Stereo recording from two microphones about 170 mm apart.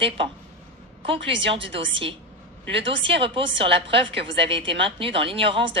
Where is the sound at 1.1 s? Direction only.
30° right (ahead or behind).